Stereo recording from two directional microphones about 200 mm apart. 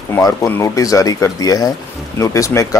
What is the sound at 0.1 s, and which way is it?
Speech, 15° left (ahead or behind).